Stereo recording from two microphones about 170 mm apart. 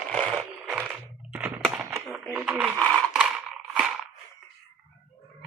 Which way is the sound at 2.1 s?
5° right (ahead or behind).